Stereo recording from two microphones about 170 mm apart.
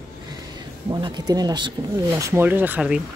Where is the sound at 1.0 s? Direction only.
25° right (ahead or behind); by 3.0 s 10° right (ahead or behind).